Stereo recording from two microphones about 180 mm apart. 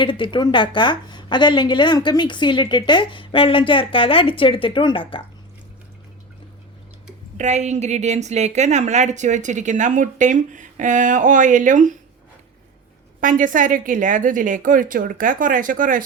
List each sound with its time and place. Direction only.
0.0 s a woman's voice: 25° left (ahead or behind)
7.3 s a woman's voice: 40° right (ahead or behind)
13.2 s a woman's voice: 45° right (ahead or behind)